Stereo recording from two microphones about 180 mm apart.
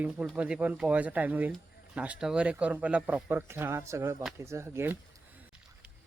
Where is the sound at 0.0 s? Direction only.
5° right (ahead or behind).